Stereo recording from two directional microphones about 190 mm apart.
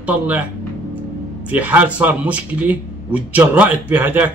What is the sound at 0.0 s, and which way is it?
Speech, 10° right (ahead or behind).